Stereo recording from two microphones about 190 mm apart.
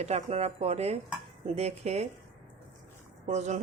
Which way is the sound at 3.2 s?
35° right (ahead or behind).